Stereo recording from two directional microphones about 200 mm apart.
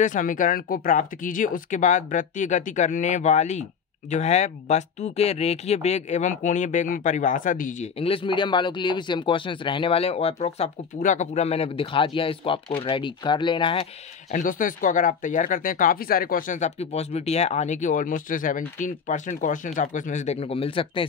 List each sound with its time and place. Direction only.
0.0 s speech: 40° left (ahead or behind); by 13.8 s 25° left (ahead or behind)
14.3 s speech: 40° left (ahead or behind); by 21.1 s 25° left (ahead or behind)